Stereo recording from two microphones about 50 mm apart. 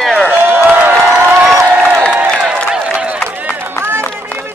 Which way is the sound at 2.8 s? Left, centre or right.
Right.